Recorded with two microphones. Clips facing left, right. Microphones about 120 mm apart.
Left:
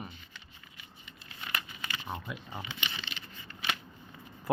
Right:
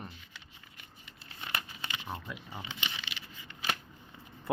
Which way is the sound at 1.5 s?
35° right (ahead or behind).